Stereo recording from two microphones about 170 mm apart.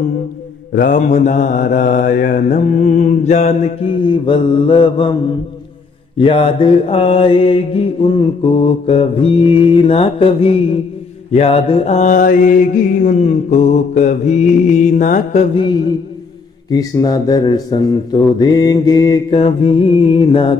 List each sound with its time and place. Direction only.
0.7 s mantra: 50° left (ahead or behind)
4.0 s mantra: 30° left (ahead or behind)
6.1 s mantra: 30° left (ahead or behind); by 15.4 s 50° left (ahead or behind)
15.5 s mantra: 30° left (ahead or behind)
19.3 s mantra: 35° left (ahead or behind)